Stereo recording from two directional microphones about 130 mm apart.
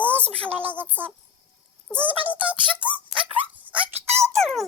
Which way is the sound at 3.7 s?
15° right (ahead or behind).